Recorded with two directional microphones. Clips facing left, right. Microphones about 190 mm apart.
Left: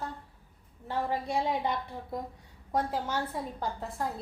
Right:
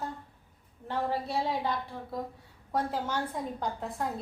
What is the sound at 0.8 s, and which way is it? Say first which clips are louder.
A woman's voice: even; 15° left (ahead or behind).